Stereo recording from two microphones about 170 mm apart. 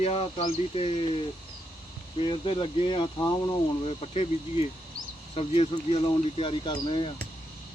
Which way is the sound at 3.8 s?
40° left (ahead or behind).